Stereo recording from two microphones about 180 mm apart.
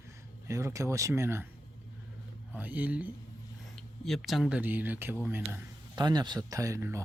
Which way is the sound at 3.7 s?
Centre (ahead or behind).